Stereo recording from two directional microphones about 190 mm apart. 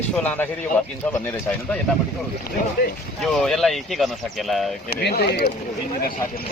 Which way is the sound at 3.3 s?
Centre (ahead or behind).